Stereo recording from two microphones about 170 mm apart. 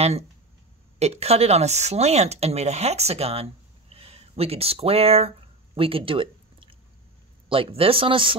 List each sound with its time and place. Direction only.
0.9 s speech: 40° right (ahead or behind)
3.9 s a sound: 35° right (ahead or behind)
7.4 s speech: 30° right (ahead or behind)